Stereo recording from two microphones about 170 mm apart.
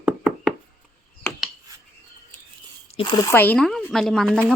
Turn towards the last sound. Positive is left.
turn(degrees=5)  # may be behind; listen again after turning